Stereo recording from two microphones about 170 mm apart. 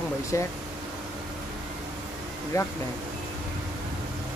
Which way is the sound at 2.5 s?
20° left (ahead or behind).